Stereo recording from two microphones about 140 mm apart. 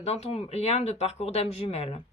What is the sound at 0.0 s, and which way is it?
Speech, 50° left (ahead or behind).